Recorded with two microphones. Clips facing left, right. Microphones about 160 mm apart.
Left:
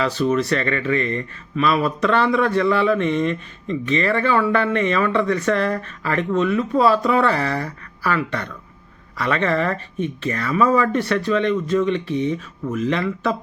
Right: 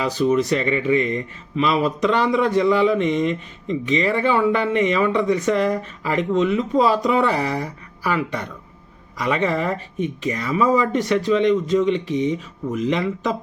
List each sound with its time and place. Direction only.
0.0 s speech: 15° right (ahead or behind)